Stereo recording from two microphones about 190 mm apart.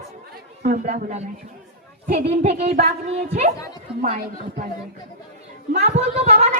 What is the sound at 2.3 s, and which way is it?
A woman's voice, 35° right (ahead or behind).